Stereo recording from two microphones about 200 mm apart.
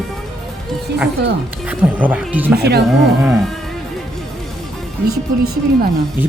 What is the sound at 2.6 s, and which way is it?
Speech, 55° right (ahead or behind).